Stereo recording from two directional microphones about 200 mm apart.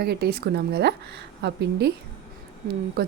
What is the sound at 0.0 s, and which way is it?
Speech, 55° right (ahead or behind).